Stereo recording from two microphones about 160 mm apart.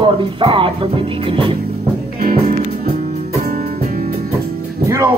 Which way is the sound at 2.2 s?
65° right (ahead or behind).